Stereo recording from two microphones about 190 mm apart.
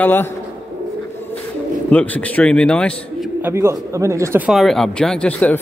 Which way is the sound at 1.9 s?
5° left (ahead or behind).